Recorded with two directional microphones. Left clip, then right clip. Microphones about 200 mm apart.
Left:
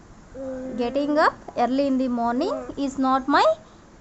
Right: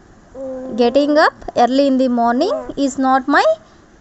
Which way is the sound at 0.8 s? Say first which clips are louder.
Right 9 dB; 35° right (ahead or behind).